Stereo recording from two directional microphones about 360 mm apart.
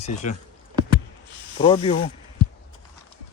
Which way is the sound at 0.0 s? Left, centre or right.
Centre.